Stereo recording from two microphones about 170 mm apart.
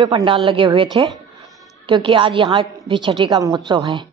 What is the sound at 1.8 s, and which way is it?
Speech, 30° right (ahead or behind).